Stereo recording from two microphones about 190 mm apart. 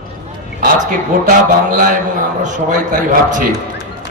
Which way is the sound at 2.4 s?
40° right (ahead or behind).